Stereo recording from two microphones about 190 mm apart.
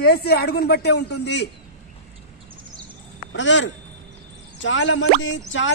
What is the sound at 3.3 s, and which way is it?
Speech, 75° left (ahead or behind).